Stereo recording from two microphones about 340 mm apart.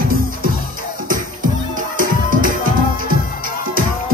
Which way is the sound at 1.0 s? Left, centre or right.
Right.